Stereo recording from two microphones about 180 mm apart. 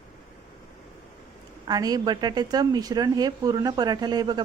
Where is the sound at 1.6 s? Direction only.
20° right (ahead or behind).